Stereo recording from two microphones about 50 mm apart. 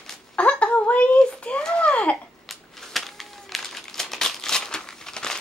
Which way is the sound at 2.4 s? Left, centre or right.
Centre.